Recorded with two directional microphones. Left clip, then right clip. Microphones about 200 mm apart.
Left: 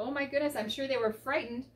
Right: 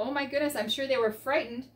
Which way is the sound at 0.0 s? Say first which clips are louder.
Right 2 dB; 10° right (ahead or behind).